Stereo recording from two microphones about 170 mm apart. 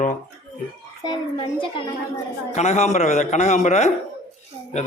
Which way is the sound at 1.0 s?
25° left (ahead or behind).